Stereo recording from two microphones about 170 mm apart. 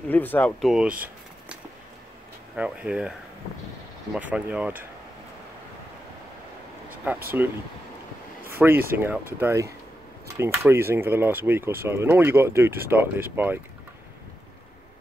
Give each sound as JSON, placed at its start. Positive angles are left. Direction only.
{"t": 0.1, "sound": "speech", "side_deg": 10}
{"t": 0.7, "sound": "speech", "side_deg": -5}
{"t": 2.5, "sound": "speech", "side_deg": -5}
{"t": 7.1, "sound": "speech", "side_deg": -10}
{"t": 8.5, "sound": "speech", "side_deg": -10}
{"t": 10.2, "sound": "a sound", "side_deg": -15}
{"t": 10.6, "sound": "speech", "side_deg": -15}